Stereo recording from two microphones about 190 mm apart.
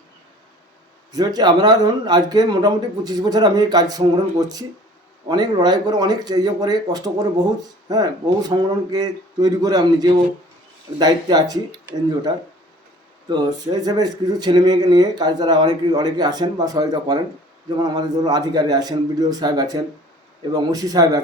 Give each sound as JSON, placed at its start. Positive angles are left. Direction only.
{"t": 1.1, "sound": "speech", "side_deg": -20}
{"t": 13.3, "sound": "speech", "side_deg": -20}